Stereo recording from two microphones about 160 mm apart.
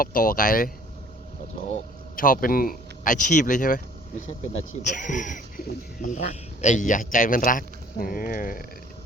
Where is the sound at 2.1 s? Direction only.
60° left (ahead or behind).